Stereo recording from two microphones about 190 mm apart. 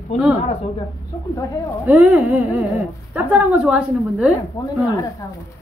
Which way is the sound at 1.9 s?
10° right (ahead or behind).